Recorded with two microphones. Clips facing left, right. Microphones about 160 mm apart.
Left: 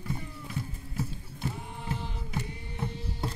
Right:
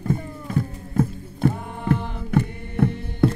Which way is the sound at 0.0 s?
50° right (ahead or behind).